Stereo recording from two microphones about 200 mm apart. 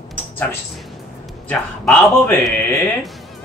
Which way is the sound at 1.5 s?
Centre (ahead or behind).